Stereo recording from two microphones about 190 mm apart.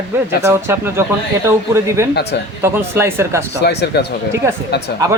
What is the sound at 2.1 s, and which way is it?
Speech, 60° left (ahead or behind).